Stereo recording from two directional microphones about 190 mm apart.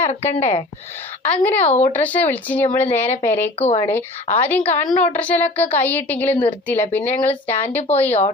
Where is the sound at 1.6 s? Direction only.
35° left (ahead or behind).